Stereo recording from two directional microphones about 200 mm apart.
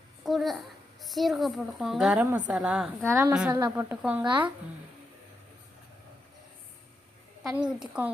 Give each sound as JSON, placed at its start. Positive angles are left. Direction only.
{"t": 0.3, "sound": "a woman's voice", "side_deg": 0}
{"t": 4.2, "sound": "speech", "side_deg": -25}
{"t": 7.4, "sound": "a woman's voice", "side_deg": -5}